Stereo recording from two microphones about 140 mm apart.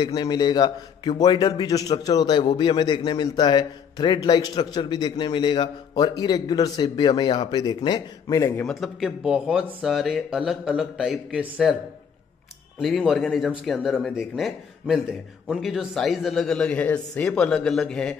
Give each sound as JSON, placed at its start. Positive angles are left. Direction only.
{"t": 0.0, "sound": "a man's voice", "side_deg": 30}
{"t": 8.6, "sound": "speech", "side_deg": 0}
{"t": 12.7, "sound": "speech", "side_deg": 0}